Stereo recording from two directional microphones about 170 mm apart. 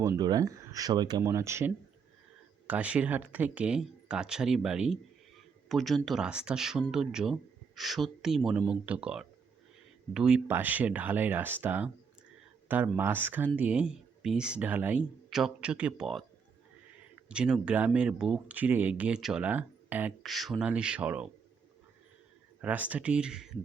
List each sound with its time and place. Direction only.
0.0 s speech: 20° right (ahead or behind); by 16.2 s centre (ahead or behind)
17.2 s speech: 5° right (ahead or behind)
22.6 s speech: 10° right (ahead or behind)